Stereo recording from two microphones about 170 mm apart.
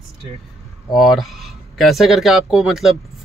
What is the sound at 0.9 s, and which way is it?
Speech, centre (ahead or behind).